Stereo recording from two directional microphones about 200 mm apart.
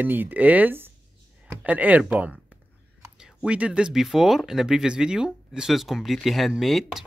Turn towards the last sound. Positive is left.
turn(degrees=0)  # may be behind; listen again after turning